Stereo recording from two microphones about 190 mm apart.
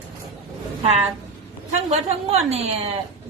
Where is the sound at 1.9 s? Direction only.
35° right (ahead or behind).